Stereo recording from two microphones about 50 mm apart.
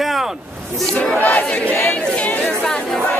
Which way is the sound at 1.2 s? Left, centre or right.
Left.